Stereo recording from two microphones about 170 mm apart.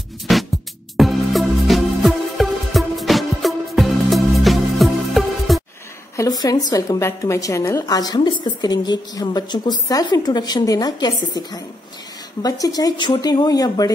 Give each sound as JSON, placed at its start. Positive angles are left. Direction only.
{"t": 0.3, "sound": "music", "side_deg": 0}
{"t": 6.1, "sound": "a woman's voice", "side_deg": 20}